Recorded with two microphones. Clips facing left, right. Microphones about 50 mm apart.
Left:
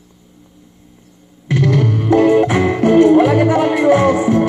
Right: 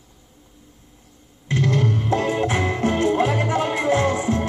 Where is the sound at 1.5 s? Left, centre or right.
Left.